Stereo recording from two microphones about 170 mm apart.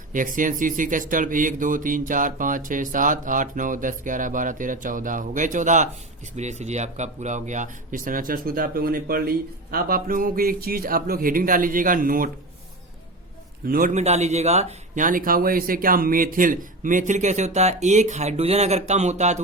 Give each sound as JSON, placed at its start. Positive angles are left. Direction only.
{"t": 0.1, "sound": "a man's voice", "side_deg": -50}
{"t": 13.7, "sound": "a man's voice", "side_deg": -60}
{"t": 13.9, "sound": "speech", "side_deg": -40}